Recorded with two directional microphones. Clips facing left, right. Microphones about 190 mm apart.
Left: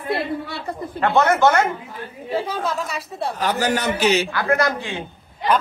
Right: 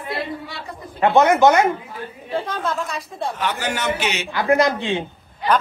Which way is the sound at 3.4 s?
40° left (ahead or behind).